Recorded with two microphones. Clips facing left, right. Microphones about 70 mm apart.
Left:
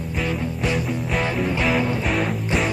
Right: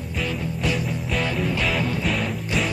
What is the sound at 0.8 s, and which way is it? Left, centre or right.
Music, centre.